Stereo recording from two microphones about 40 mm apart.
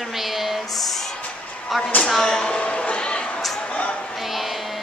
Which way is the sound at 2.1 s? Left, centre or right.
Centre.